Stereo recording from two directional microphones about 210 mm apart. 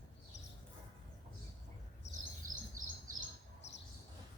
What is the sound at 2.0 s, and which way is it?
Chirp, 55° left (ahead or behind).